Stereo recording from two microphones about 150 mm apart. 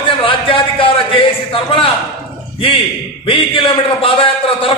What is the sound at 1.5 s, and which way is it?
Speech, 35° left (ahead or behind).